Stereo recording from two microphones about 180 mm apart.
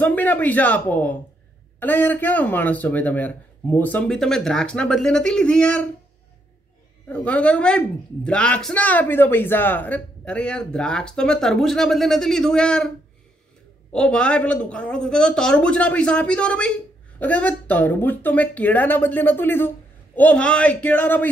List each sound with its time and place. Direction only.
0.0 s speech: 10° left (ahead or behind)
7.1 s a woman's voice: 5° left (ahead or behind)
13.9 s a woman's voice: 5° left (ahead or behind)